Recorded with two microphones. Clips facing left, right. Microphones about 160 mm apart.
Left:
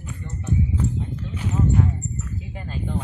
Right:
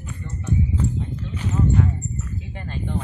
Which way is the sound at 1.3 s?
15° left (ahead or behind).